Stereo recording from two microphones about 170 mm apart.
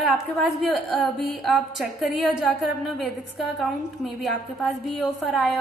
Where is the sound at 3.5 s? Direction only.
Centre (ahead or behind).